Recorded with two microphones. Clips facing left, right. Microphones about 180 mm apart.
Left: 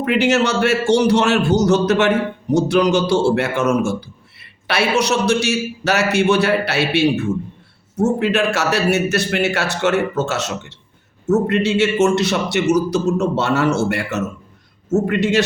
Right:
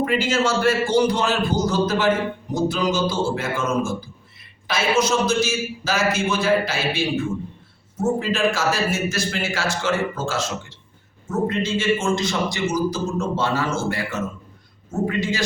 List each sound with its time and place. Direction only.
0.0 s a man's voice: 70° left (ahead or behind)